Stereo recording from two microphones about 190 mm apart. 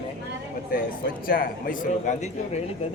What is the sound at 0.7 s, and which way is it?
Speech, 50° left (ahead or behind).